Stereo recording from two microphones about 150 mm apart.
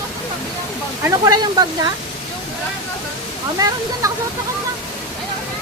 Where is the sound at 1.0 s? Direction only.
25° right (ahead or behind).